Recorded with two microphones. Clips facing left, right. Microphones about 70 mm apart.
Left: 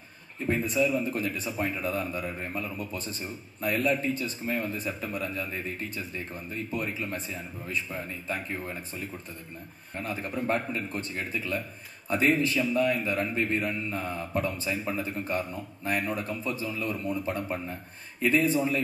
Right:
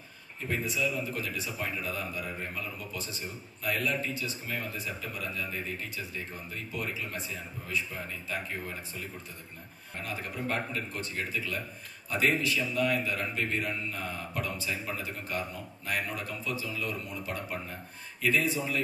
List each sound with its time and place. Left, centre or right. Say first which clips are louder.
0.5 s a man's voice: left 6 dB; left
10.0 s a man's voice: left 5 dB; left